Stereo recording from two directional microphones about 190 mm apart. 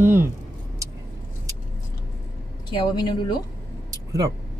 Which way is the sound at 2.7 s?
25° left (ahead or behind).